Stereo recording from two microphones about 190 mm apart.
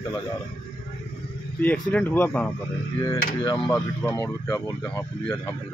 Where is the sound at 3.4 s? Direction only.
20° left (ahead or behind).